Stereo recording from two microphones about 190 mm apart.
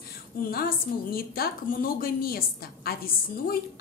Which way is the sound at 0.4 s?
50° left (ahead or behind).